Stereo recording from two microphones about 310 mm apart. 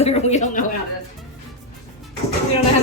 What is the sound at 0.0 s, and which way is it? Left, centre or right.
Speech, left.